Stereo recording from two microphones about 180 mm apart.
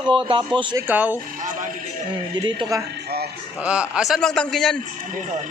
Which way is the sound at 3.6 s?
5° right (ahead or behind).